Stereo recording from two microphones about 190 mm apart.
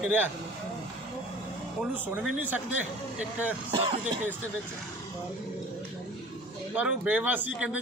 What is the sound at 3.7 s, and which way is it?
Speech, 30° right (ahead or behind).